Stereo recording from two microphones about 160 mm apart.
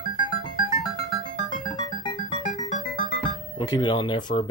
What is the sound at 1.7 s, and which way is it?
Music, 30° left (ahead or behind).